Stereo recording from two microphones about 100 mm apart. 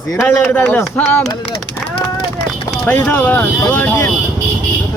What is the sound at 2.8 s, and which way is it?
Speech, 15° left (ahead or behind).